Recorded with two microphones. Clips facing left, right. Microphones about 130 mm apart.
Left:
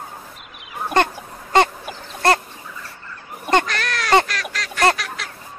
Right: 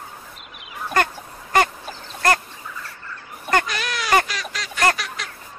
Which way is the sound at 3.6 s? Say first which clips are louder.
Left 2 dB; 5° right (ahead or behind).